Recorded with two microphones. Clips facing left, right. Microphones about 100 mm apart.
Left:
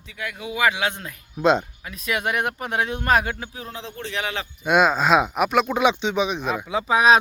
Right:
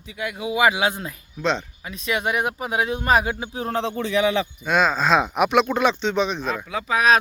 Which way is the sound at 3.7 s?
90° right.